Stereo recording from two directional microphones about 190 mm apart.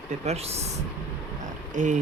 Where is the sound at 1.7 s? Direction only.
40° right (ahead or behind).